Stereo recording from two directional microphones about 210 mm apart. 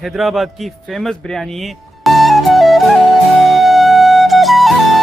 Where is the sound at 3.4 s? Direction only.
Centre (ahead or behind).